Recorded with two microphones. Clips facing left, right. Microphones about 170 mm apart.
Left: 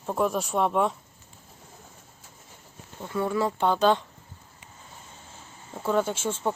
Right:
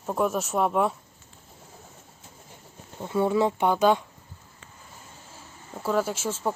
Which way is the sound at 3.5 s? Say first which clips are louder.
Right 1 dB; 10° right (ahead or behind).